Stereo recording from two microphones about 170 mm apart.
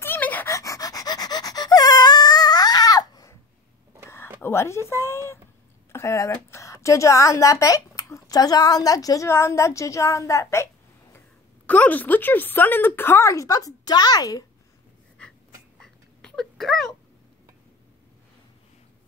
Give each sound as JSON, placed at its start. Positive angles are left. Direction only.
{"t": 0.0, "sound": "dog", "side_deg": 10}
{"t": 4.4, "sound": "a woman's voice", "side_deg": 15}
{"t": 15.8, "sound": "a sound", "side_deg": 5}